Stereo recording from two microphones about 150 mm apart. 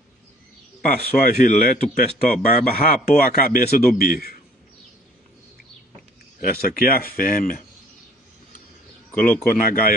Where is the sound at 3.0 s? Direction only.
85° left.